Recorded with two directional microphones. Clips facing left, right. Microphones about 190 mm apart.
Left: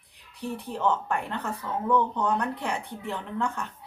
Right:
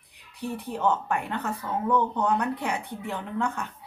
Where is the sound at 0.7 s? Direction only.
10° right (ahead or behind).